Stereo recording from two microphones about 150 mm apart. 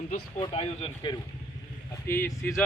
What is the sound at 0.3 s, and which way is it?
Speech, 40° left (ahead or behind).